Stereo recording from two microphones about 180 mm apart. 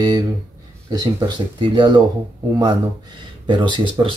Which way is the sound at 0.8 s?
25° right (ahead or behind).